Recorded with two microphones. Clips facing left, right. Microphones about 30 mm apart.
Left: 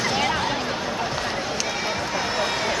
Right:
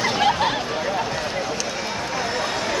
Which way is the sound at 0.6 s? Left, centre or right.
Centre.